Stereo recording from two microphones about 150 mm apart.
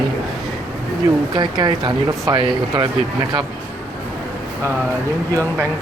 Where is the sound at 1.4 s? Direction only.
30° right (ahead or behind).